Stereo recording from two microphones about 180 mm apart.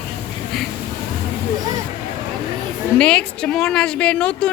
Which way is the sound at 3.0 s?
5° left (ahead or behind).